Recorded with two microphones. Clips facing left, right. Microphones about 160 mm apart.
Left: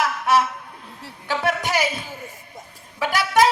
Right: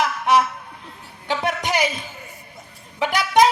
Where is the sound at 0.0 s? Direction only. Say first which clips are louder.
Right 1 dB; 20° right (ahead or behind).